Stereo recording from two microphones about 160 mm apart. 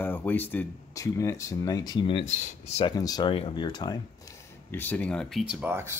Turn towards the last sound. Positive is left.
turn(degrees=-10)  # may be behind; listen again after turning